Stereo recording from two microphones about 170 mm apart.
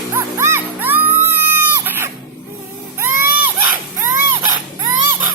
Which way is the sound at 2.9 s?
15° right (ahead or behind).